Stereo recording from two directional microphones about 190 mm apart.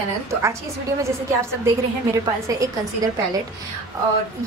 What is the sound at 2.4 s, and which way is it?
Speech, 15° right (ahead or behind).